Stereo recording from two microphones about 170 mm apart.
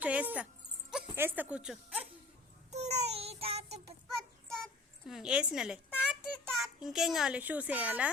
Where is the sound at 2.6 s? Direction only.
40° right (ahead or behind).